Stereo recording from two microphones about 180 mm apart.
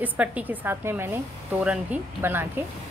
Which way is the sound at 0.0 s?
10° right (ahead or behind).